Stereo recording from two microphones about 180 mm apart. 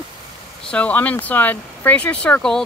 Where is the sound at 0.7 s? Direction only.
5° left (ahead or behind).